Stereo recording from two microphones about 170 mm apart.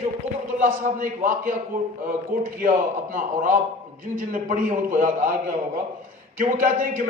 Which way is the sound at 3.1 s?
50° right (ahead or behind).